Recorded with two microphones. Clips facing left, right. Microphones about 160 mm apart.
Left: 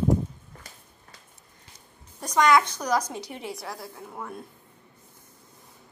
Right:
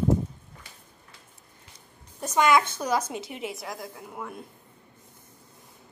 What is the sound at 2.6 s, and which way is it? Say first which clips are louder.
Speech: left 1 dB; 25° right (ahead or behind).